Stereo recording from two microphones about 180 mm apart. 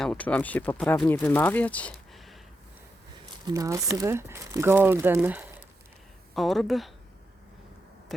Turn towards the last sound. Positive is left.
turn(degrees=0)  # may be behind; listen again after turning